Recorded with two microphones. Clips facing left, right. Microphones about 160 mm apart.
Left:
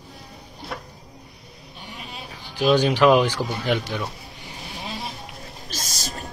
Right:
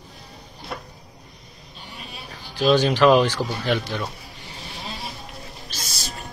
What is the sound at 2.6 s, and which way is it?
Speech, 10° left (ahead or behind).